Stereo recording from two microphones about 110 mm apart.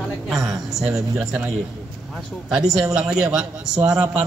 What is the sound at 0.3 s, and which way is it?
A man's voice, centre (ahead or behind).